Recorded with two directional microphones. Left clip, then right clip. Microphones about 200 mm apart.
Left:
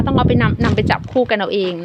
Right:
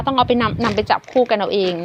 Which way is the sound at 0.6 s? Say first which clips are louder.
Even; 15° left (ahead or behind).